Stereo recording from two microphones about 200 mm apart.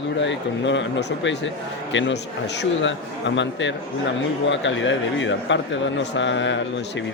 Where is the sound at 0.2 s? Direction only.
65° left (ahead or behind).